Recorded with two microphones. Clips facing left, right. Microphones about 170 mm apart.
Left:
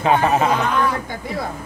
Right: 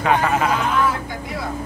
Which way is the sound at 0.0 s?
25° left (ahead or behind).